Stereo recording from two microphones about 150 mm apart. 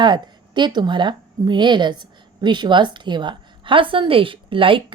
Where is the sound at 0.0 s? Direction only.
30° right (ahead or behind).